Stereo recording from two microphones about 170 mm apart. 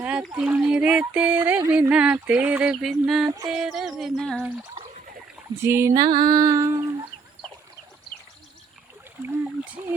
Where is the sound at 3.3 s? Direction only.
20° right (ahead or behind).